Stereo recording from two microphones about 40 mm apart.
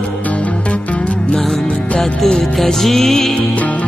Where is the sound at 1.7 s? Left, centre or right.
Left.